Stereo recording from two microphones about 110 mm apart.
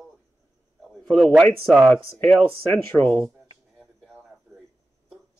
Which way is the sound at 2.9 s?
20° right (ahead or behind).